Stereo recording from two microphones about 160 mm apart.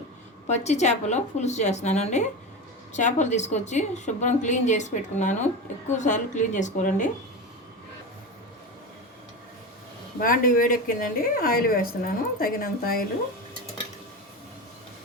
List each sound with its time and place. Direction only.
0.4 s a woman's voice: 45° left (ahead or behind)
10.2 s a woman's voice: 60° left (ahead or behind)